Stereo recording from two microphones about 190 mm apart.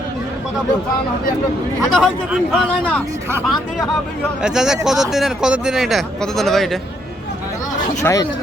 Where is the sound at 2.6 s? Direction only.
5° left (ahead or behind).